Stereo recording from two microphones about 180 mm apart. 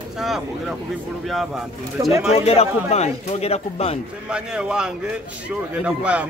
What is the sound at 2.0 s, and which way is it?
Speech, 20° right (ahead or behind).